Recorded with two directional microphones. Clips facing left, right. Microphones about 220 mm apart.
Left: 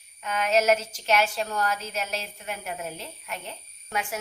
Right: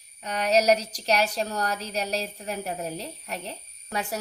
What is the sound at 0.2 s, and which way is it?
A woman's voice, 40° right (ahead or behind).